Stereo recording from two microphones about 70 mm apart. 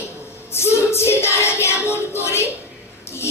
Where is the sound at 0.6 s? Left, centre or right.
Left.